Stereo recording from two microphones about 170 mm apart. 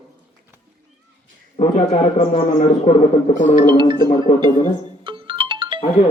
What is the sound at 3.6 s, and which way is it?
Music, 25° right (ahead or behind).